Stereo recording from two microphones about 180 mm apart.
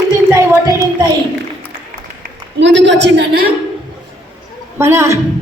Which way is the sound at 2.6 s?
80° right.